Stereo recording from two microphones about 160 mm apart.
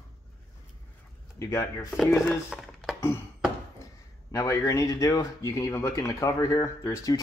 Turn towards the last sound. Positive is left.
turn(degrees=20)  # may be behind; listen again after turning